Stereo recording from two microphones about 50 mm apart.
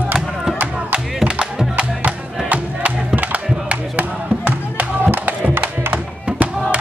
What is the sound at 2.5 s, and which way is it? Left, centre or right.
Music, right.